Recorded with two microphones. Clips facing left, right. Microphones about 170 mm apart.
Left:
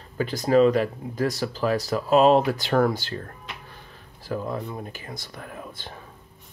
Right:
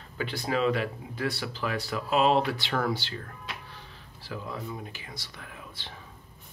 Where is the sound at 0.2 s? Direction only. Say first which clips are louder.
Left 9 dB; 40° left (ahead or behind).